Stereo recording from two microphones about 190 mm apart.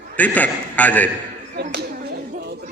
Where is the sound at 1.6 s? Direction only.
60° right (ahead or behind).